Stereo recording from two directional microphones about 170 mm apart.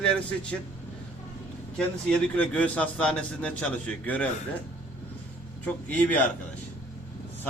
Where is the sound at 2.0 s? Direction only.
5° left (ahead or behind).